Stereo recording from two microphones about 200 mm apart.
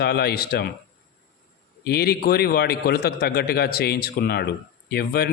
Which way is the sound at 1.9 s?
50° left (ahead or behind).